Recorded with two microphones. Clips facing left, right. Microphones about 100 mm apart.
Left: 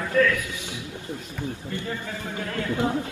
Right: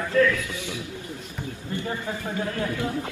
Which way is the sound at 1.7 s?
25° right (ahead or behind).